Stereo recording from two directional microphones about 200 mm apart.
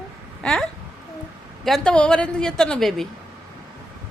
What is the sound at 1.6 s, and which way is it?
A woman's voice, 5° left (ahead or behind).